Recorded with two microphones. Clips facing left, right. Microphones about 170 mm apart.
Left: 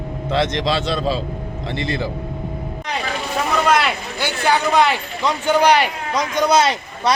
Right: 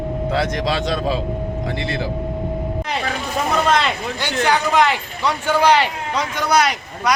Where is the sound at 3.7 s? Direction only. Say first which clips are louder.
Even; 5° left (ahead or behind).